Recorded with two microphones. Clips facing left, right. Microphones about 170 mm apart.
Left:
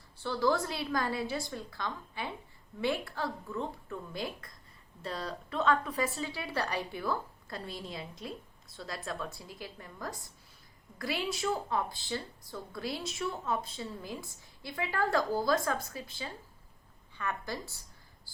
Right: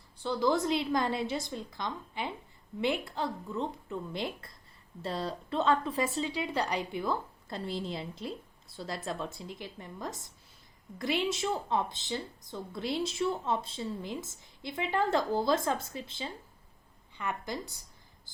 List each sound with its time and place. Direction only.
0.2 s speech: 15° right (ahead or behind)